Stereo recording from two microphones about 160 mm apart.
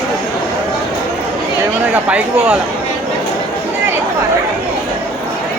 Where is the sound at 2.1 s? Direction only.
5° right (ahead or behind).